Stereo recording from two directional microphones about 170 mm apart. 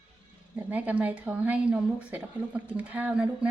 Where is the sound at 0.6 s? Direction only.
10° right (ahead or behind).